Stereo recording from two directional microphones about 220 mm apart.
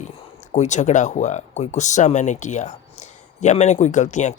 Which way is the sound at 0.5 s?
30° left (ahead or behind).